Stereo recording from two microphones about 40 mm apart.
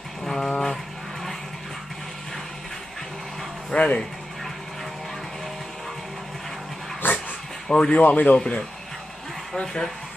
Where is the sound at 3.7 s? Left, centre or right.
Left.